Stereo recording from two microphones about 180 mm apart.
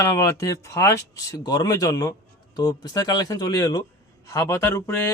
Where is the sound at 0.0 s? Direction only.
15° left (ahead or behind).